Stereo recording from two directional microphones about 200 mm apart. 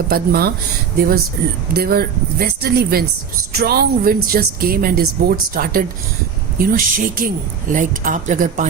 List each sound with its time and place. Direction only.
0.1 s speech: 50° right (ahead or behind)
1.7 s speech: 50° right (ahead or behind)